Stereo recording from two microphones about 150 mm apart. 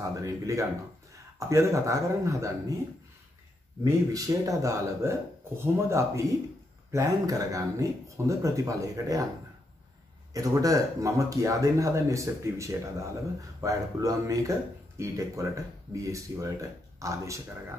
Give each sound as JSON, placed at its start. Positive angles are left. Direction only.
{"t": 0.0, "sound": "speech", "side_deg": -20}
{"t": 3.8, "sound": "speech", "side_deg": -25}
{"t": 10.3, "sound": "speech", "side_deg": -25}